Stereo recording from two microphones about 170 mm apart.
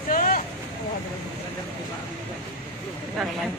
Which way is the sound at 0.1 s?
50° left (ahead or behind).